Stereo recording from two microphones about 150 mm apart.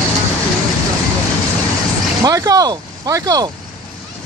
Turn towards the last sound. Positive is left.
turn(degrees=-25)  # may be behind; listen again after turning